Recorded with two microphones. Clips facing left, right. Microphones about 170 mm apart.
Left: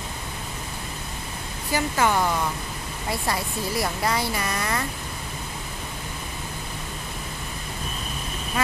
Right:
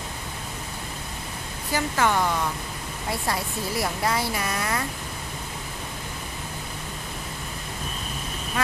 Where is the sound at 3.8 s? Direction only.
Centre (ahead or behind).